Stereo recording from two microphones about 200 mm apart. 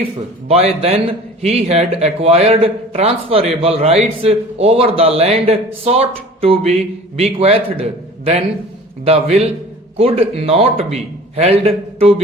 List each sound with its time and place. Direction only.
0.4 s a man's voice: 30° right (ahead or behind)